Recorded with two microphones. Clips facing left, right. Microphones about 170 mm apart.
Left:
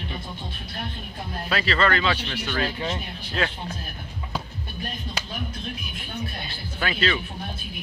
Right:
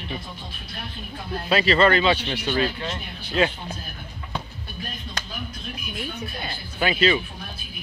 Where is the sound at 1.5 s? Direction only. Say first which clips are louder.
Right 5 dB; 20° right (ahead or behind).